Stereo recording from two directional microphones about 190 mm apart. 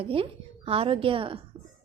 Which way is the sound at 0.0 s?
30° right (ahead or behind).